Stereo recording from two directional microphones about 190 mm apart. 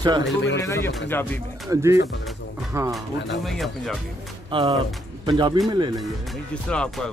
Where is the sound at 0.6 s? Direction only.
15° left (ahead or behind).